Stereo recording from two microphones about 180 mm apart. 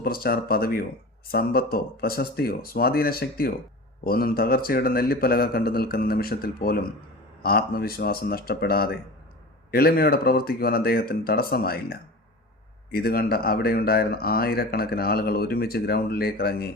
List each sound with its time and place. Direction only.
0.0 s speech: 55° left (ahead or behind)